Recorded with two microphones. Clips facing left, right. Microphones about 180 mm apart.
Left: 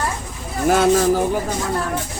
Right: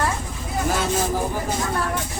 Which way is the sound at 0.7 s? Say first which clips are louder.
Left 9 dB; 60° left (ahead or behind).